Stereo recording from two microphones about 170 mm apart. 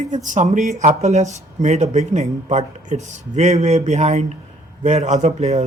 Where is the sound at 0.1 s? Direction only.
45° right (ahead or behind).